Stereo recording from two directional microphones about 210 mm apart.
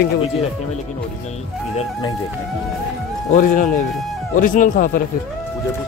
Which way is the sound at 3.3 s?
40° left (ahead or behind).